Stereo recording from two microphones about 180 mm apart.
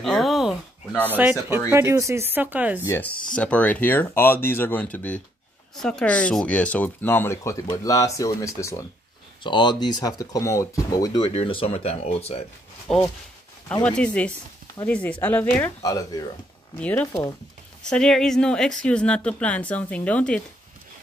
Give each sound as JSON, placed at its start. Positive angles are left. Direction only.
{"t": 0.0, "sound": "a sound", "side_deg": 0}
{"t": 1.1, "sound": "speech", "side_deg": -10}
{"t": 2.8, "sound": "speech", "side_deg": 15}
{"t": 9.4, "sound": "speech", "side_deg": 25}
{"t": 11.2, "sound": "speech", "side_deg": 30}
{"t": 12.8, "sound": "speech", "side_deg": 5}
{"t": 16.8, "sound": "speech", "side_deg": 5}